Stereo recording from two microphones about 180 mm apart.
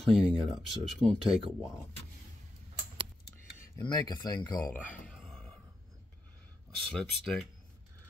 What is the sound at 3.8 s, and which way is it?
Speech, 25° left (ahead or behind).